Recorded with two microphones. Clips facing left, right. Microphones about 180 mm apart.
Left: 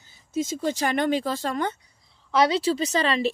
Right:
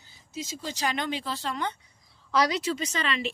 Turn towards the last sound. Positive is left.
turn(degrees=35)  # may be behind; listen again after turning